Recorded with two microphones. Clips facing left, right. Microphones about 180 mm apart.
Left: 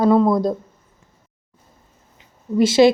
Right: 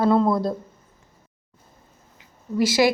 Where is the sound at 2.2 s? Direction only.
25° left (ahead or behind).